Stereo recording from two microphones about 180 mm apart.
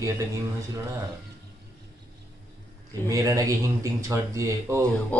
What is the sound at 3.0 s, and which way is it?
Speech, 20° right (ahead or behind).